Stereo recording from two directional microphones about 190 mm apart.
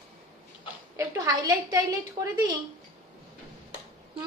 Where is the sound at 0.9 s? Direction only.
15° right (ahead or behind).